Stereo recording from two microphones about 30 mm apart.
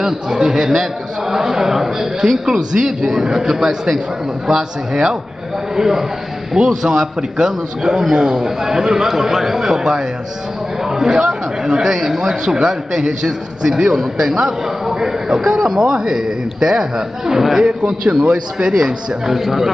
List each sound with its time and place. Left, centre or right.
0.0 s a man's voice: centre
2.4 s a man's voice: right
17.4 s a man's voice: centre
17.6 s a man's voice: right; by 19.7 s centre